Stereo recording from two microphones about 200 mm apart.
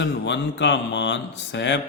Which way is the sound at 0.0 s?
65° left (ahead or behind).